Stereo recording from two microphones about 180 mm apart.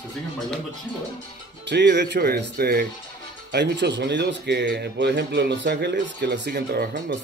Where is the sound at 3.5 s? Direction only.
70° right (ahead or behind).